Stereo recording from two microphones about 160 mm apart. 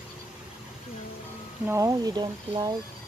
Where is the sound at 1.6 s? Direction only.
20° right (ahead or behind).